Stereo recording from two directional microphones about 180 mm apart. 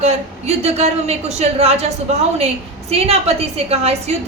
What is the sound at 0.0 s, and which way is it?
A woman's voice, 35° right (ahead or behind).